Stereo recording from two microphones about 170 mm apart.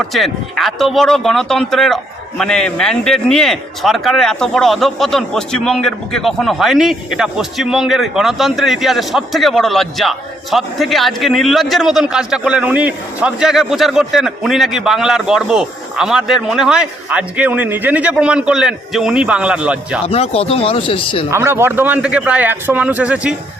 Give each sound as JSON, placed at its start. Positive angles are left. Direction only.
{"t": 0.0, "sound": "a man's voice", "side_deg": 0}
{"t": 20.1, "sound": "speech", "side_deg": 35}
{"t": 21.2, "sound": "a man's voice", "side_deg": -15}